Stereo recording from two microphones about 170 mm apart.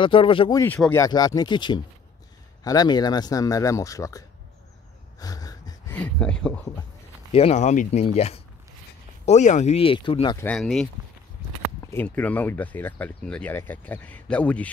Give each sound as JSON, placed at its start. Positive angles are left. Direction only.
{"t": 0.0, "sound": "speech", "side_deg": 30}
{"t": 5.2, "sound": "a sound", "side_deg": 20}
{"t": 5.9, "sound": "speech", "side_deg": 5}
{"t": 7.3, "sound": "speech", "side_deg": 40}
{"t": 10.3, "sound": "speech", "side_deg": 10}
{"t": 11.8, "sound": "speech", "side_deg": 10}